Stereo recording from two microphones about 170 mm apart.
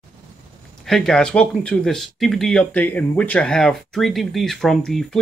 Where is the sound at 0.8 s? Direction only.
5° left (ahead or behind).